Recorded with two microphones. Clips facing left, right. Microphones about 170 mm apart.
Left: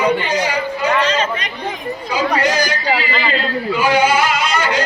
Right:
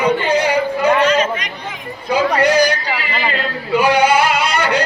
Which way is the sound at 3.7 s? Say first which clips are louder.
Right 2 dB; 60° right (ahead or behind).